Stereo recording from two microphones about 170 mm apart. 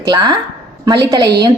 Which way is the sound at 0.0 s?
25° right (ahead or behind).